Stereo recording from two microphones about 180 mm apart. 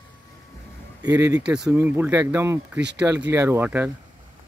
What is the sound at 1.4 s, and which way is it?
Speech, 5° right (ahead or behind).